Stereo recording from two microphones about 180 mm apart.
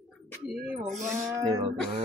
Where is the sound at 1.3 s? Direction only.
15° right (ahead or behind).